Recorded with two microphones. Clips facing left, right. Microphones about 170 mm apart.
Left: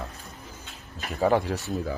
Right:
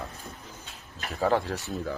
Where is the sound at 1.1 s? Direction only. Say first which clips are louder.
Left 3 dB; 15° left (ahead or behind).